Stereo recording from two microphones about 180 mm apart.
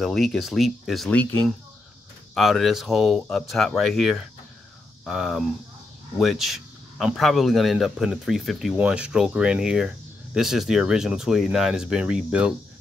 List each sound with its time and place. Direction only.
0.0 s a man's voice: centre (ahead or behind)